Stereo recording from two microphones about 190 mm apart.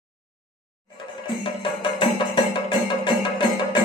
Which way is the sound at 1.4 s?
25° left (ahead or behind).